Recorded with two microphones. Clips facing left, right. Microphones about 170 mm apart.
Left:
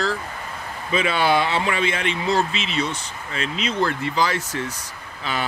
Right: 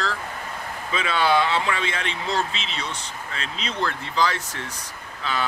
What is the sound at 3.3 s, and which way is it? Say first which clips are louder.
Speech: left 8 dB; 60° left (ahead or behind).